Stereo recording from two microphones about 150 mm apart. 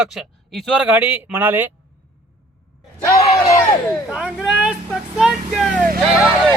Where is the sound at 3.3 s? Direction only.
20° left (ahead or behind).